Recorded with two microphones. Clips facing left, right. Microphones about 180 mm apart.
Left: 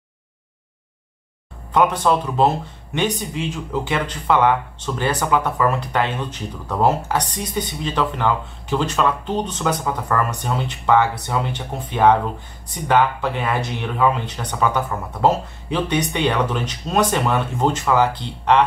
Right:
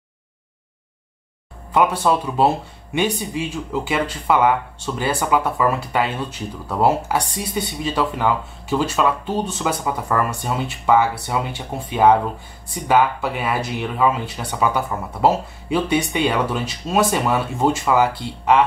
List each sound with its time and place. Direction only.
1.7 s speech: 10° right (ahead or behind)